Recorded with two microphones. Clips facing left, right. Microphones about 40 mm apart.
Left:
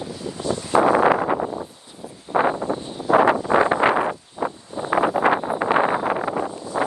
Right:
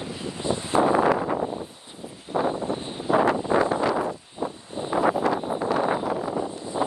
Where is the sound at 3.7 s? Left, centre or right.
Left.